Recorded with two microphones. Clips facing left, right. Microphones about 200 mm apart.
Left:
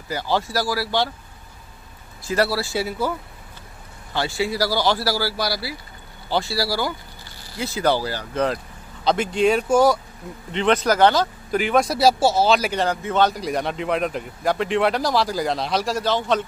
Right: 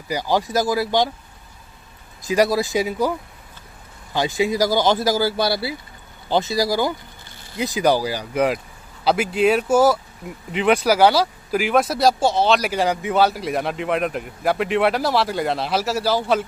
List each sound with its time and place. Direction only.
0.1 s speech: 15° right (ahead or behind)
2.2 s speech: 15° right (ahead or behind)
4.1 s a man's voice: 15° right (ahead or behind); by 12.8 s centre (ahead or behind)
12.8 s a man's voice: 10° right (ahead or behind)